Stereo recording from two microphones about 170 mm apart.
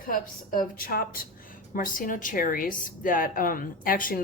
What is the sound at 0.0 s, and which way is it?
A woman's voice, 55° left (ahead or behind).